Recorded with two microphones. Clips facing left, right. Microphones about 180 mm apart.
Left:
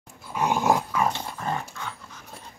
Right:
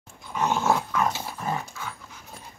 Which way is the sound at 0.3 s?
10° left (ahead or behind).